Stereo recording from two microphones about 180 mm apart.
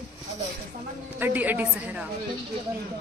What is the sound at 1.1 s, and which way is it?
Speech, 10° right (ahead or behind).